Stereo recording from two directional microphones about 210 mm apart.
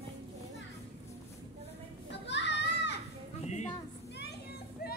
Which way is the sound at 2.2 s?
55° left (ahead or behind).